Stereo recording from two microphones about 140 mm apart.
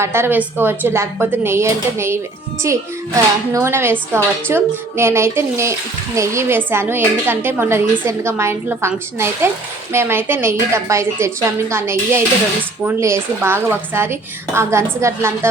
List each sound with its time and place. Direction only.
0.0 s a woman's voice: 15° right (ahead or behind)